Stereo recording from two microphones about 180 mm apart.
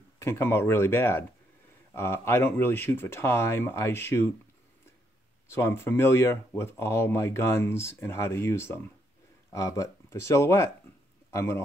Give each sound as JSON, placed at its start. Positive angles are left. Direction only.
{"t": 0.2, "sound": "speech", "side_deg": 15}
{"t": 5.5, "sound": "speech", "side_deg": 15}